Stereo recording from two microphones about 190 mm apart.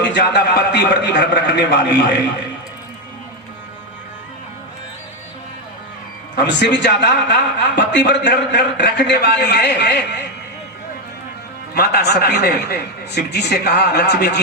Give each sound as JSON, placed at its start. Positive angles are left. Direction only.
{"t": 0.1, "sound": "a man's voice", "side_deg": 65}
{"t": 6.4, "sound": "speech", "side_deg": 65}
{"t": 11.7, "sound": "speech", "side_deg": 55}